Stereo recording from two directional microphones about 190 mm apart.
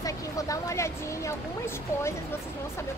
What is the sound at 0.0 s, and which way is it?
Vehicle, 20° left (ahead or behind).